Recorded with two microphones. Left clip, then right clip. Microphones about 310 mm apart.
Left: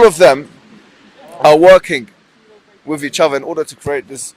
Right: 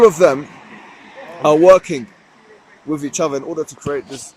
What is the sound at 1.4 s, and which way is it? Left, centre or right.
Speech, left.